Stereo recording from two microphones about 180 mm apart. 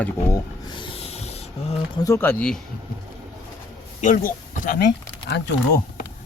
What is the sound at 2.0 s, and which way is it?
Speech, 15° left (ahead or behind).